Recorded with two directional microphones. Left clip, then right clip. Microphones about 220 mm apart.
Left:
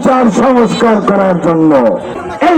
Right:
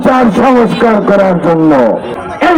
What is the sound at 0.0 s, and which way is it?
Speech, 15° left (ahead or behind).